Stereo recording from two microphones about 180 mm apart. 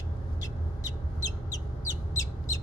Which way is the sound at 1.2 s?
20° left (ahead or behind).